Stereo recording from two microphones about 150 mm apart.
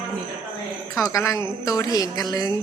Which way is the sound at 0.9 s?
20° left (ahead or behind).